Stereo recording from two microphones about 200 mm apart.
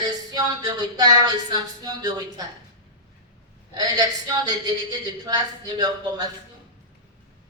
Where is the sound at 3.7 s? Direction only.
20° right (ahead or behind).